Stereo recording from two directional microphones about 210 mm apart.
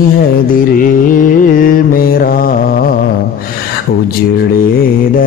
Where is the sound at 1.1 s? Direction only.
40° left (ahead or behind).